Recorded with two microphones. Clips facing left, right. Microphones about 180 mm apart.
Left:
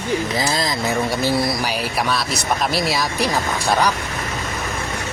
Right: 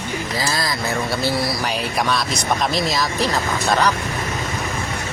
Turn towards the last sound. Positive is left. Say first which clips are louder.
# even
turn(degrees=10)  # may be behind; listen again after turning